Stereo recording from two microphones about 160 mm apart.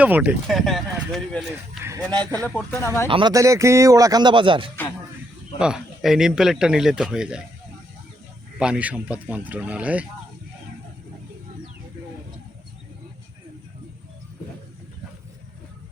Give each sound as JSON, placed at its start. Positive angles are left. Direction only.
{"t": 0.0, "sound": "a man's voice", "side_deg": -10}
{"t": 1.8, "sound": "speech", "side_deg": -20}
{"t": 2.0, "sound": "a man's voice", "side_deg": 5}
{"t": 2.7, "sound": "speech", "side_deg": 15}
{"t": 3.1, "sound": "speech", "side_deg": -30}
{"t": 3.3, "sound": "speech", "side_deg": -20}
{"t": 5.5, "sound": "a man's voice", "side_deg": -5}
{"t": 8.5, "sound": "speech", "side_deg": -5}